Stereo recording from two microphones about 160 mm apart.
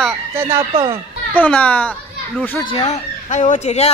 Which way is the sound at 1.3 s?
10° left (ahead or behind).